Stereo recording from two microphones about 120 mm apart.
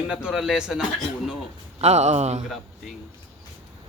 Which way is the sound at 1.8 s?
65° right (ahead or behind).